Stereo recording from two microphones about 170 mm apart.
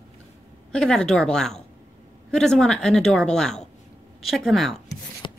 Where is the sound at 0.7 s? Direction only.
5° left (ahead or behind).